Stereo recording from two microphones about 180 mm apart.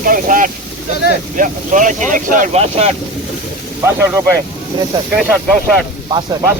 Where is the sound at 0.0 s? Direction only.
50° right (ahead or behind).